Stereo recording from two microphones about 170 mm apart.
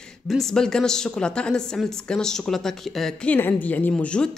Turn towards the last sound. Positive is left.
turn(degrees=5)  # may be behind; listen again after turning